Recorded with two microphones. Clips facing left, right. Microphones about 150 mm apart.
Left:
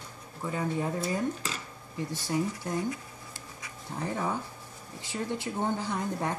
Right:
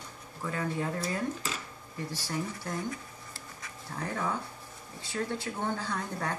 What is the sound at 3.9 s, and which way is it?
Speech, 20° left (ahead or behind).